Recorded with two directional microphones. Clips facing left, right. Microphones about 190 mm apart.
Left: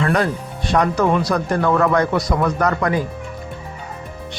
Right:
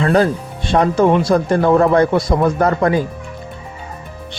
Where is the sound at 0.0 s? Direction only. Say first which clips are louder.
Right 5 dB; 30° right (ahead or behind).